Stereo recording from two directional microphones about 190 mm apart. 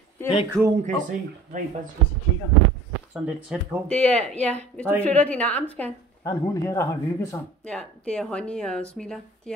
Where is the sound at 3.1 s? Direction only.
5° right (ahead or behind).